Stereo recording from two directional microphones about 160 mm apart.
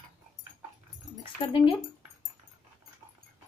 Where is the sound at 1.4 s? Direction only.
35° left (ahead or behind).